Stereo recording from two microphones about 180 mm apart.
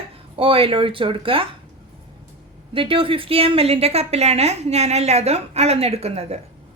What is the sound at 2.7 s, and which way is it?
A woman's voice, 30° right (ahead or behind).